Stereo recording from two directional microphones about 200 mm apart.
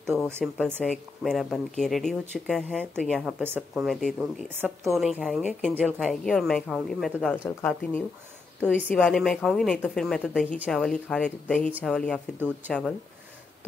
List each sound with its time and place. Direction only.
0.0 s a woman's voice: centre (ahead or behind)
12.4 s speech: 10° right (ahead or behind)